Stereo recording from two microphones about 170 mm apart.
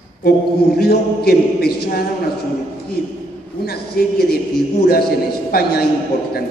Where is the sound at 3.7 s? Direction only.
65° left (ahead or behind).